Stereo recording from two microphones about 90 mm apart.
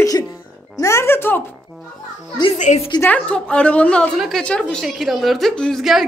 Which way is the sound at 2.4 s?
90° left.